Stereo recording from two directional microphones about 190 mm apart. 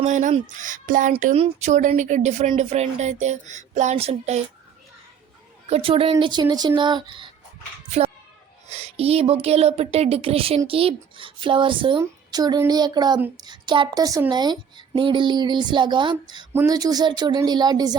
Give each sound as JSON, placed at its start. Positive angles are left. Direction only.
{"t": 0.0, "sound": "speech", "side_deg": -40}
{"t": 5.6, "sound": "speech", "side_deg": -30}
{"t": 8.6, "sound": "speech", "side_deg": -35}